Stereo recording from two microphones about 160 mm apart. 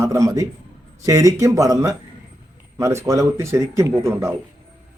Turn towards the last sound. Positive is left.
turn(degrees=-15)  # may be behind; listen again after turning